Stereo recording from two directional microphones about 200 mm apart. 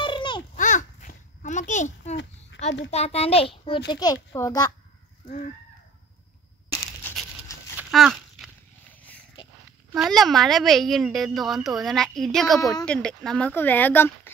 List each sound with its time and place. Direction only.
0.0 s babbling: 25° left (ahead or behind)
0.6 s a sound: 40° left (ahead or behind)
2.9 s a child's voice: 30° left (ahead or behind); by 4.6 s 15° left (ahead or behind)
6.7 s crushing: 10° left (ahead or behind)
7.7 s a sound: centre (ahead or behind)
9.9 s a woman's voice: centre (ahead or behind)